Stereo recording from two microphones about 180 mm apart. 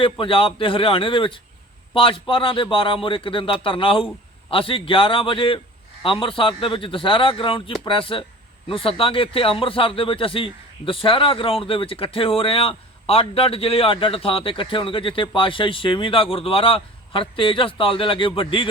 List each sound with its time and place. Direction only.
0.0 s speech: 30° left (ahead or behind)